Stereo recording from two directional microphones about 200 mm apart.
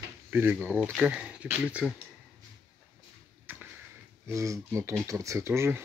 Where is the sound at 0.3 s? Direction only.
10° right (ahead or behind).